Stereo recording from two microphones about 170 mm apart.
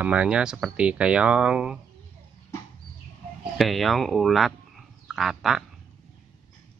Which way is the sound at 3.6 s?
Centre (ahead or behind).